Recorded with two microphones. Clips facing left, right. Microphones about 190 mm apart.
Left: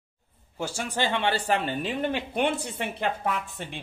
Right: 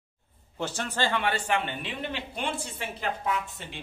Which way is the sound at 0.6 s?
10° left (ahead or behind).